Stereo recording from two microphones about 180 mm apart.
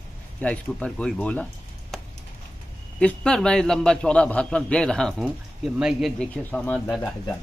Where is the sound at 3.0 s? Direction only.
5° left (ahead or behind).